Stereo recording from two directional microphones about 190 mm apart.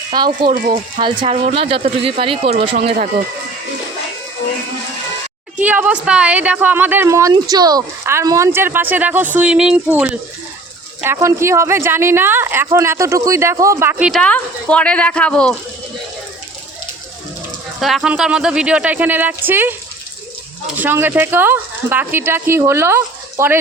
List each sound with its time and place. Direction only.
0.1 s speech: 25° right (ahead or behind)
5.5 s a woman's voice: 10° right (ahead or behind)
14.1 s speech: 5° left (ahead or behind)
17.7 s a woman's voice: centre (ahead or behind)
20.7 s a woman's voice: 10° right (ahead or behind)